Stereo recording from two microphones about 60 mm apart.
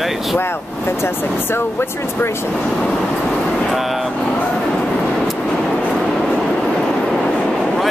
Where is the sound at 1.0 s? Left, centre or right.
Left.